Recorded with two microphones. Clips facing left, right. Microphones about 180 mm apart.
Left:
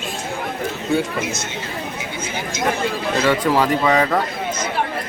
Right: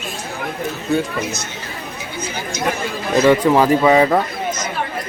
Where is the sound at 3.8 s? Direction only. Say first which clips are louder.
Right 4 dB; 15° right (ahead or behind).